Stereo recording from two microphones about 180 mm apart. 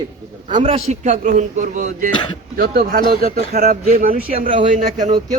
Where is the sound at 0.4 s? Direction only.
35° right (ahead or behind).